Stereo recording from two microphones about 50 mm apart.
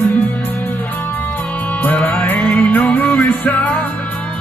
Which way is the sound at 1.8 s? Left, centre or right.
Left.